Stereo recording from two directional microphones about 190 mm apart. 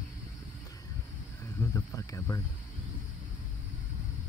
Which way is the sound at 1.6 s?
15° left (ahead or behind).